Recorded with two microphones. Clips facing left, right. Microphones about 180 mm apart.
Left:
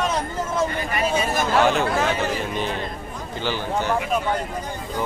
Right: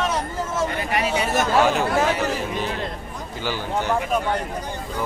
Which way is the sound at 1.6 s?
5° right (ahead or behind).